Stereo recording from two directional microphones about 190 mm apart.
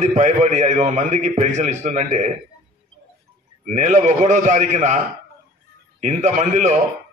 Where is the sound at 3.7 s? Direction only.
40° right (ahead or behind).